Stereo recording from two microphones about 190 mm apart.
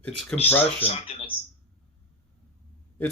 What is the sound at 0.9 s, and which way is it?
Speech, 30° left (ahead or behind).